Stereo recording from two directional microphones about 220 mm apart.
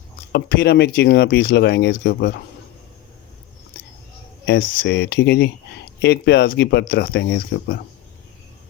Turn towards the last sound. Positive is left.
turn(degrees=45)  # may be behind; listen again after turning